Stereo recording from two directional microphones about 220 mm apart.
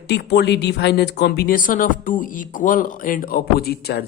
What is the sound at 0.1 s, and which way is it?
Speech, 50° left (ahead or behind).